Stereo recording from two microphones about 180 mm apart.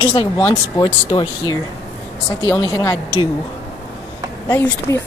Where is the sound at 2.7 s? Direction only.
15° left (ahead or behind).